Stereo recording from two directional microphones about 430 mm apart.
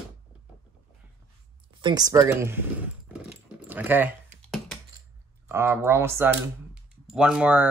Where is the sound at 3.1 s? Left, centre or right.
Centre.